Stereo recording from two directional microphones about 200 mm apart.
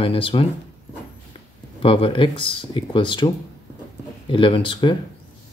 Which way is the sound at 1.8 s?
25° left (ahead or behind).